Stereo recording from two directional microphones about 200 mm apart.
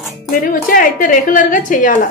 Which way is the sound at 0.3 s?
45° left (ahead or behind).